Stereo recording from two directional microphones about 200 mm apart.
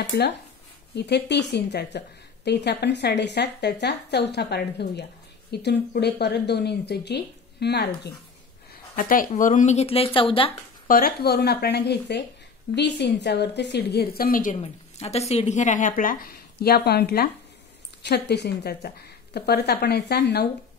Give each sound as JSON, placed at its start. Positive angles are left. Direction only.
{"t": 0.9, "sound": "a woman's voice", "side_deg": 55}
{"t": 8.9, "sound": "speech", "side_deg": 45}
{"t": 10.9, "sound": "a woman's voice", "side_deg": 45}